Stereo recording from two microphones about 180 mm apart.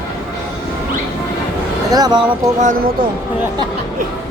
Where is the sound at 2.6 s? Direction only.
45° right (ahead or behind).